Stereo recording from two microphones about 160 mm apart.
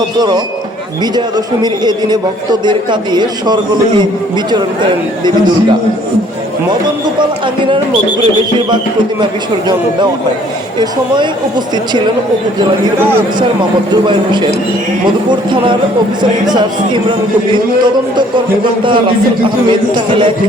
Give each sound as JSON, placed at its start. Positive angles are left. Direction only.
{"t": 1.6, "sound": "a man's voice", "side_deg": -25}
{"t": 7.2, "sound": "speech", "side_deg": -30}
{"t": 10.8, "sound": "a man's voice", "side_deg": -30}
{"t": 13.6, "sound": "a man's voice", "side_deg": -30}